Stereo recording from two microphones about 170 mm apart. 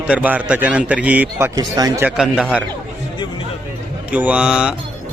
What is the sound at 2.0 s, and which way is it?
Speech, 5° right (ahead or behind).